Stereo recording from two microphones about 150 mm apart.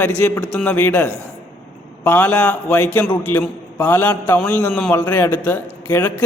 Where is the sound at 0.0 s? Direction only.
20° left (ahead or behind).